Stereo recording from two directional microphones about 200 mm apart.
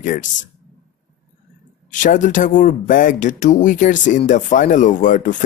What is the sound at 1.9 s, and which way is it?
Speech, 40° left (ahead or behind).